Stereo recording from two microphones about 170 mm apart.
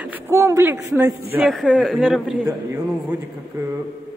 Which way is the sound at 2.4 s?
15° right (ahead or behind).